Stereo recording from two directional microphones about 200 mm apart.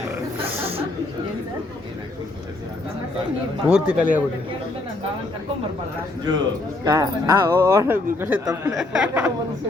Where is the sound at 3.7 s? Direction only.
5° right (ahead or behind).